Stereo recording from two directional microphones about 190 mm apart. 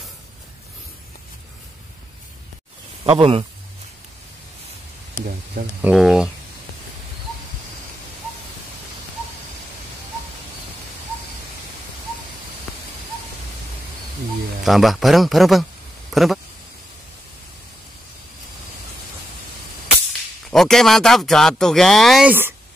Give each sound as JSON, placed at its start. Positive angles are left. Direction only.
{"t": 3.0, "sound": "speech", "side_deg": -30}
{"t": 5.8, "sound": "a man's voice", "side_deg": -5}
{"t": 14.6, "sound": "a man's voice", "side_deg": 0}
{"t": 20.1, "sound": "speech", "side_deg": 0}